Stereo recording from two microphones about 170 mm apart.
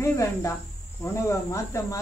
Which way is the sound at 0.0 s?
15° left (ahead or behind).